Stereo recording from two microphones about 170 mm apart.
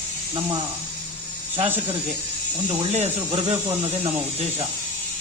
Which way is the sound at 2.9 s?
40° right (ahead or behind).